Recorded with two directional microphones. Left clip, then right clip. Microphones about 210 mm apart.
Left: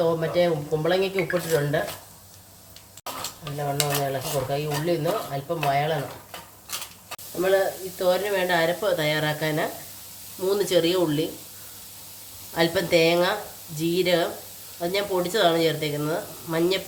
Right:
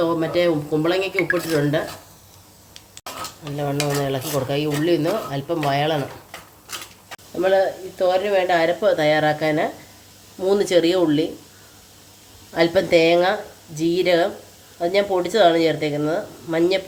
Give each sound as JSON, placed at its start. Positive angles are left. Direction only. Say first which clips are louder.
{"t": 0.2, "sound": "speech", "louder": "right 3 dB", "side_deg": -50}
{"t": 3.7, "sound": "speech", "louder": "right 2 dB", "side_deg": -50}
{"t": 7.9, "sound": "speech", "louder": "right 5 dB", "side_deg": -20}
{"t": 12.5, "sound": "speech", "louder": "right 5 dB", "side_deg": -10}